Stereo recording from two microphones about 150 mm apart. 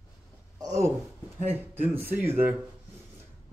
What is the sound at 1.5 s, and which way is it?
Speech, 15° right (ahead or behind).